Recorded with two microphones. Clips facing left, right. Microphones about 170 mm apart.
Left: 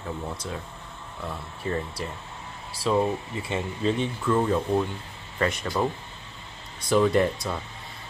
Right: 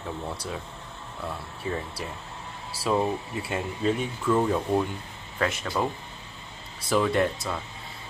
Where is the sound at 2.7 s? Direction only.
5° right (ahead or behind).